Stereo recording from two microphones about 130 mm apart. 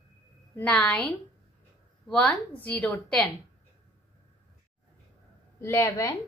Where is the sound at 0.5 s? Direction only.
10° left (ahead or behind).